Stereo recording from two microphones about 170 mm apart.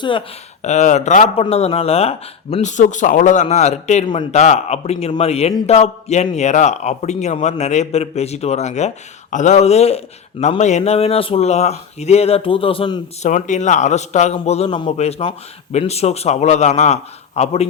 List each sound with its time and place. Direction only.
0.0 s speech: 30° left (ahead or behind)
0.6 s a man's voice: 40° left (ahead or behind)
13.2 s a man's voice: 45° left (ahead or behind)